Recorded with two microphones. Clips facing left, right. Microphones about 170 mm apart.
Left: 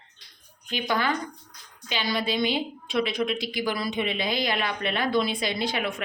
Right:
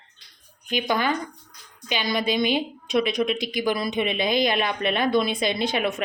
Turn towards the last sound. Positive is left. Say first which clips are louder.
# right 4 dB
turn(degrees=-20)  # may be behind; listen again after turning